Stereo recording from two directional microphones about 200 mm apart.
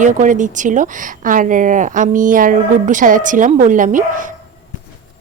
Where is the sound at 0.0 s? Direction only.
40° right (ahead or behind).